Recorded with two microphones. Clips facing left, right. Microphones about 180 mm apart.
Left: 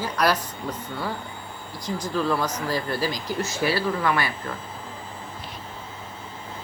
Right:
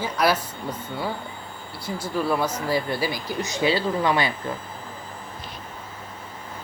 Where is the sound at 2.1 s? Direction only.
10° right (ahead or behind).